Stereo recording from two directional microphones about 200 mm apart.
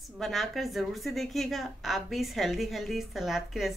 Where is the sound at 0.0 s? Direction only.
Centre (ahead or behind).